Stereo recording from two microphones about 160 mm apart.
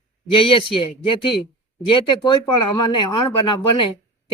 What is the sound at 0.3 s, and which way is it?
Speech, 35° left (ahead or behind).